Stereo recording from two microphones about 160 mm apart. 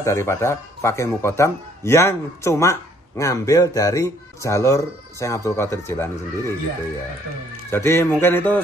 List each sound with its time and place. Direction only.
0.0 s a man's voice: 15° left (ahead or behind)
7.7 s a man's voice: 15° left (ahead or behind)